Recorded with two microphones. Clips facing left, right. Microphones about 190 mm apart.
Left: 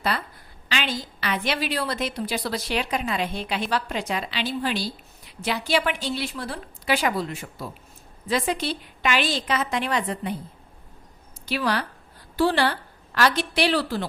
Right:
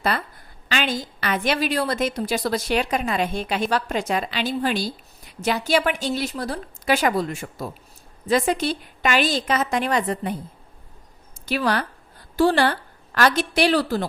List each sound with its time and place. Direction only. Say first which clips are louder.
0.7 s a woman's voice: right 4 dB; 45° right (ahead or behind)
11.4 s a woman's voice: right 3 dB; 50° right (ahead or behind)